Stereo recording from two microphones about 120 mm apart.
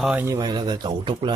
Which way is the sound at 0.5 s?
35° right (ahead or behind).